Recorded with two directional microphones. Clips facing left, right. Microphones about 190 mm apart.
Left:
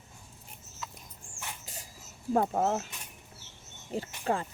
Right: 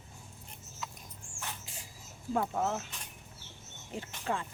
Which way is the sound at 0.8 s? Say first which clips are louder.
Even; centre (ahead or behind).